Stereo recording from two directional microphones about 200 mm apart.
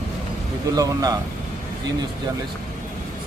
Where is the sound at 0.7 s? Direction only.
20° right (ahead or behind).